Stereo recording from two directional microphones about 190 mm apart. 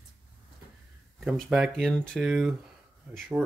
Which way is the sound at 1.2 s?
Centre (ahead or behind).